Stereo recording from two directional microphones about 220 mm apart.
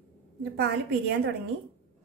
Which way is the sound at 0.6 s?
55° right (ahead or behind).